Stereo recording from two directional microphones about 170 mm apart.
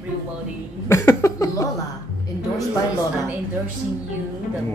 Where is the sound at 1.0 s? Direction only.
15° left (ahead or behind).